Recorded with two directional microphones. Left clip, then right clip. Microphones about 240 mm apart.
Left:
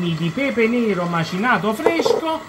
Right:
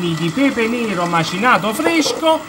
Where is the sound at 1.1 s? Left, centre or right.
Right.